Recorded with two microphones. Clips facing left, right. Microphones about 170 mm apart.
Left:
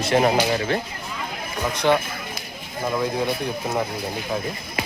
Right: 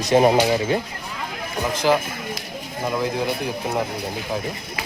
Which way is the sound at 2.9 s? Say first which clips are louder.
Even; centre (ahead or behind).